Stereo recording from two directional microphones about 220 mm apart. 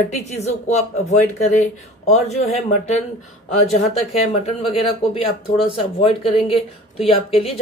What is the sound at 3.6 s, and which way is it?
A woman's voice, 25° left (ahead or behind).